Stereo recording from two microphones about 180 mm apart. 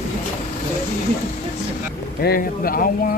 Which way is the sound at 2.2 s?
55° left (ahead or behind).